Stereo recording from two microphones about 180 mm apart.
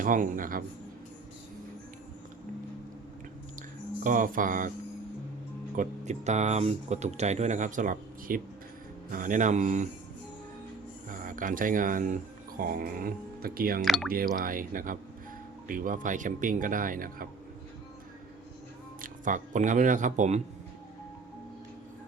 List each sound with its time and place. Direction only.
0.0 s speech: 45° right (ahead or behind)
4.0 s speech: 50° right (ahead or behind)
5.7 s speech: 45° right (ahead or behind)
11.1 s speech: 50° right (ahead or behind)
13.8 s speech: centre (ahead or behind)
14.1 s speech: 50° right (ahead or behind)
19.0 s speech: 45° right (ahead or behind)